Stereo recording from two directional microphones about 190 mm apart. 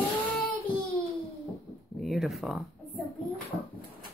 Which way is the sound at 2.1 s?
Centre (ahead or behind).